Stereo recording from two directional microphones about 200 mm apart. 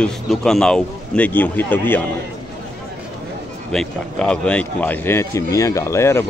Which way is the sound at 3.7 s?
5° left (ahead or behind).